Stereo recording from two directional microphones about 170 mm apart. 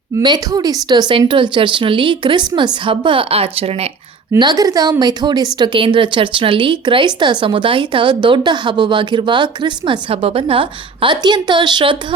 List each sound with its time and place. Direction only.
0.2 s a woman's voice: 25° right (ahead or behind)
4.3 s a woman's voice: 25° right (ahead or behind)